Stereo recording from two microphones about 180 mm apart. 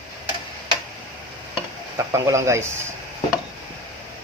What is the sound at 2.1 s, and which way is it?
Speech, 15° right (ahead or behind).